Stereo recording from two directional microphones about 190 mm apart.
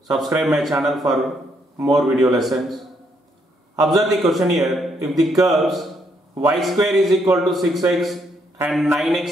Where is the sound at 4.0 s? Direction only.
Centre (ahead or behind).